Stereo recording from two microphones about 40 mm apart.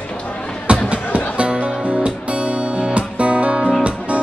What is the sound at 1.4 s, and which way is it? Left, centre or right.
Music, right.